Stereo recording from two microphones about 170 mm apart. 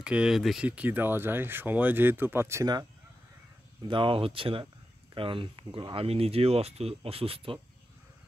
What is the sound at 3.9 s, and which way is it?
Speech, 30° right (ahead or behind).